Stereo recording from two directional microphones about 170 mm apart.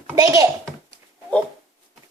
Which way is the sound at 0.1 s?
20° right (ahead or behind).